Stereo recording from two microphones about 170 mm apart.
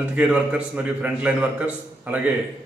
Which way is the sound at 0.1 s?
5° right (ahead or behind).